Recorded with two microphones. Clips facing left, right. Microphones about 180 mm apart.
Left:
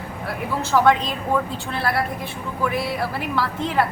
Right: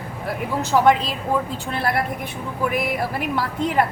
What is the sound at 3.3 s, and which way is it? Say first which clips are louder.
Speech: right 1 dB; 15° right (ahead or behind).